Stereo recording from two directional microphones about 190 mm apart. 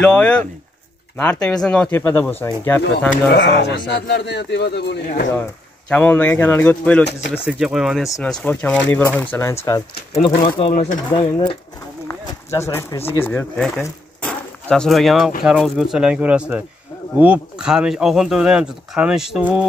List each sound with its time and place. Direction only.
0.0 s speech: 5° left (ahead or behind)
3.3 s speech: 65° left (ahead or behind)
5.9 s speech: 10° left (ahead or behind)
10.1 s speech: 25° left (ahead or behind); by 13.8 s 5° left (ahead or behind)
14.2 s a sound: centre (ahead or behind)
15.4 s speech: centre (ahead or behind)